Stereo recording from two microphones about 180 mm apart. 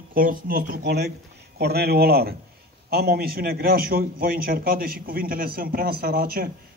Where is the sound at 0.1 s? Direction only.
50° right (ahead or behind).